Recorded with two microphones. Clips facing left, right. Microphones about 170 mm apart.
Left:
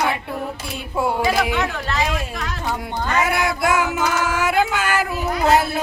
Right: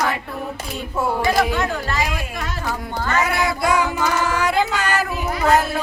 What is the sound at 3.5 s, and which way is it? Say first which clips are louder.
Child singing: even; 5° left (ahead or behind).